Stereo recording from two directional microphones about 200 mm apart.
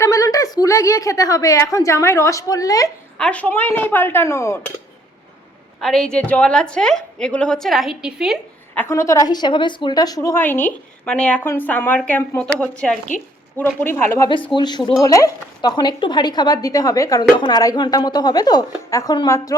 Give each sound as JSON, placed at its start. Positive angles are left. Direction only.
{"t": 0.0, "sound": "speech", "side_deg": 15}
{"t": 3.2, "sound": "speech", "side_deg": 5}
{"t": 5.8, "sound": "a woman's voice", "side_deg": 0}
{"t": 8.7, "sound": "speech", "side_deg": 10}